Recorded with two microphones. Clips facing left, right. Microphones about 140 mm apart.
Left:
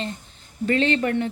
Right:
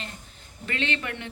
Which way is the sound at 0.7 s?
35° left (ahead or behind).